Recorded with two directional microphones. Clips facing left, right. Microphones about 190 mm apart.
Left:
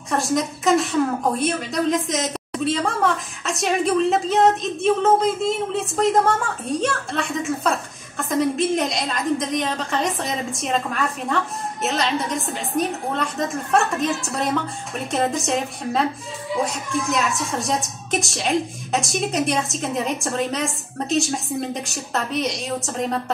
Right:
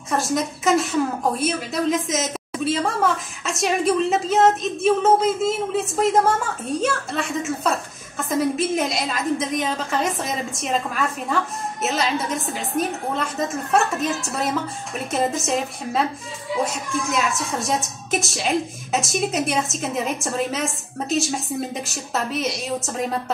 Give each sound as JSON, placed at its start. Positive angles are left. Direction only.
{"t": 0.1, "sound": "a woman's voice", "side_deg": 0}